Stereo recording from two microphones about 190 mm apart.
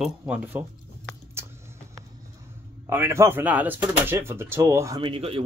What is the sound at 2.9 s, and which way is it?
Speech, 10° right (ahead or behind).